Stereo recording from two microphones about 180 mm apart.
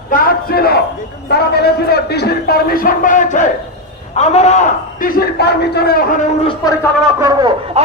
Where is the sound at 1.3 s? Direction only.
60° left (ahead or behind).